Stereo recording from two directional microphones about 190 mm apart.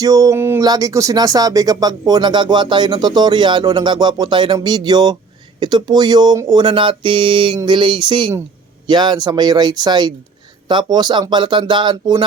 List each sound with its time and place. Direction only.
0.0 s speech: 15° right (ahead or behind)